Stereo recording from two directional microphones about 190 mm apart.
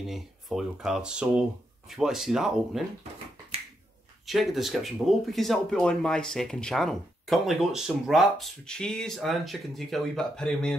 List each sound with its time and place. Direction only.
0.0 s speech: centre (ahead or behind)
4.3 s speech: centre (ahead or behind)